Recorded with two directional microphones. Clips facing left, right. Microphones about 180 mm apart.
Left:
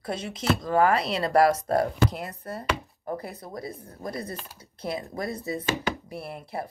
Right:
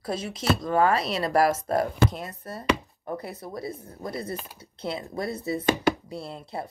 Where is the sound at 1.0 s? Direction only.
30° left (ahead or behind).